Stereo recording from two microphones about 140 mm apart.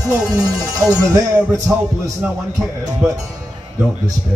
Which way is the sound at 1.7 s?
10° right (ahead or behind).